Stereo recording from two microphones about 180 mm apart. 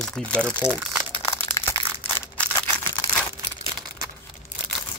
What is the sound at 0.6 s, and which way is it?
Speech, 5° right (ahead or behind).